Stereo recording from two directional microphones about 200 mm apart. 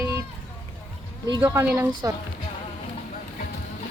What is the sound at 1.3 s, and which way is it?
Speech, 15° right (ahead or behind).